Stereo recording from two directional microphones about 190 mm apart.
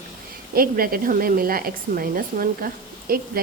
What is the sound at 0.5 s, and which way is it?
A woman's voice, 50° right (ahead or behind).